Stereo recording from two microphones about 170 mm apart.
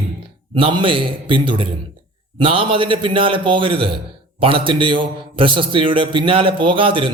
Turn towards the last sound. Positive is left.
turn(degrees=-30)  # may be behind; listen again after turning